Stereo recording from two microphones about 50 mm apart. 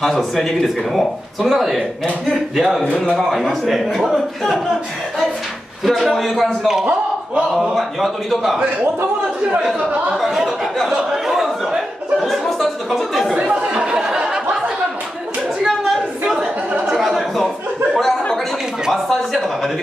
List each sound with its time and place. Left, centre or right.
0.0 s speech: centre
5.9 s speech: centre
7.7 s speech: centre
10.0 s speech: centre
11.1 s a sound: centre
13.3 s speech: centre
15.6 s a sound: centre
17.9 s a sound: centre
19.0 s speech: centre